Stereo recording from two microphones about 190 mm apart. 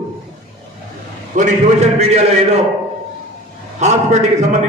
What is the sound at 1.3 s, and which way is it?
A man's voice, 40° right (ahead or behind).